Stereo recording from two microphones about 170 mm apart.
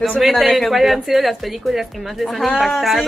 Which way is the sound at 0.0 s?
Centre (ahead or behind).